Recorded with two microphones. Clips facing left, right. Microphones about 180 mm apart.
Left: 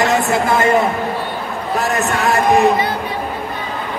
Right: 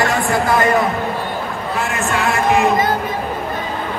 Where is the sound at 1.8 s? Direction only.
40° left (ahead or behind).